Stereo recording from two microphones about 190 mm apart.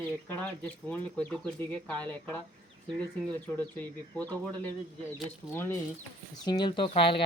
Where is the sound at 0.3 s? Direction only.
10° left (ahead or behind).